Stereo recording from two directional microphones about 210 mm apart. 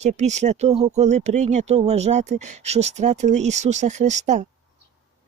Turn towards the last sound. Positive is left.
turn(degrees=-35)  # may be behind; listen again after turning